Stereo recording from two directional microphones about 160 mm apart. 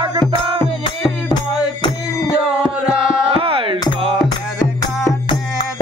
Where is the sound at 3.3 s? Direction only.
35° right (ahead or behind).